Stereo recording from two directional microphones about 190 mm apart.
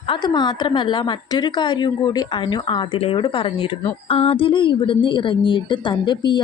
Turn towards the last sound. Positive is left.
turn(degrees=25)  # may be behind; listen again after turning